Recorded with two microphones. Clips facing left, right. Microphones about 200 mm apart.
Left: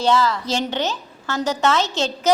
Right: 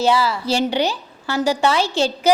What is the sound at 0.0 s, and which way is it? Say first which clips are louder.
A woman's voice: right 1 dB; 10° right (ahead or behind).